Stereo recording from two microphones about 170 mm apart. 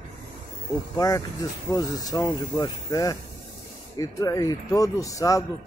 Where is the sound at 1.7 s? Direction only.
20° left (ahead or behind).